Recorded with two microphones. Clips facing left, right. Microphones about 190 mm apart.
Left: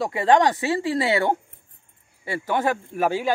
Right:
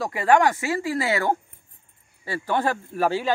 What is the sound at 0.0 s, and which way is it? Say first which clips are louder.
Speech: left 1 dB; 25° left (ahead or behind).